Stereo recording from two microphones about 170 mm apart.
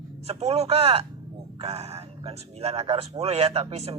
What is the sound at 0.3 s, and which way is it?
Speech, 40° right (ahead or behind).